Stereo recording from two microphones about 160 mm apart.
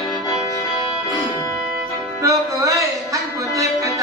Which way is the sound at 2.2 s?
20° right (ahead or behind).